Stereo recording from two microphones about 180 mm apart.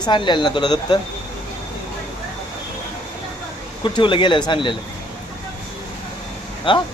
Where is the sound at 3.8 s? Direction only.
25° left (ahead or behind).